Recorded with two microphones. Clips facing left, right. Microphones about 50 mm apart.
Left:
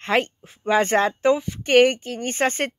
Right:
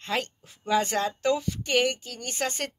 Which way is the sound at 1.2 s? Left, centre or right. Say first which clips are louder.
Left 6 dB; left.